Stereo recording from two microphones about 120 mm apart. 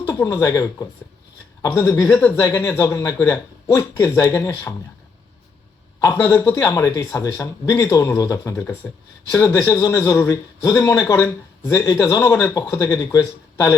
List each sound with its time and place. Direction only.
0.1 s speech: 25° left (ahead or behind)
1.6 s speech: 20° left (ahead or behind)
6.0 s speech: 20° left (ahead or behind)